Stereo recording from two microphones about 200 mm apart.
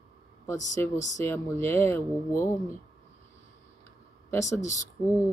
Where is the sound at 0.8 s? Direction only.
10° left (ahead or behind).